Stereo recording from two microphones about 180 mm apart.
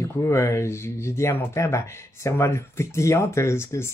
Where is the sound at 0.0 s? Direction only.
15° left (ahead or behind).